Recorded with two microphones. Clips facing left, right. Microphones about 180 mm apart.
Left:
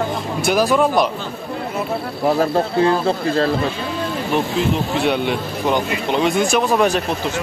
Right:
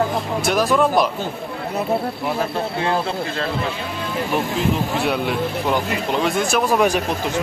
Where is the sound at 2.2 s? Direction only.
40° left (ahead or behind).